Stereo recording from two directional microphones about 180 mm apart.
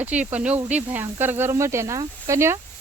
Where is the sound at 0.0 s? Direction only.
10° right (ahead or behind).